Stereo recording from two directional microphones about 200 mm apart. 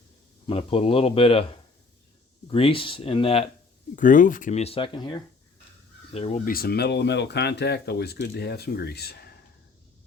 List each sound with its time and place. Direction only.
0.4 s speech: 30° left (ahead or behind)
2.5 s speech: 25° left (ahead or behind)
3.9 s speech: 40° left (ahead or behind); by 5.1 s 25° left (ahead or behind)
6.1 s speech: 30° left (ahead or behind)
6.4 s speech: 45° left (ahead or behind)